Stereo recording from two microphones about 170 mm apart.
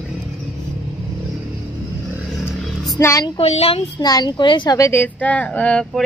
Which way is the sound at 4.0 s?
25° left (ahead or behind).